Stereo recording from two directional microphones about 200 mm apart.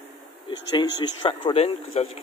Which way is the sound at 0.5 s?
20° left (ahead or behind).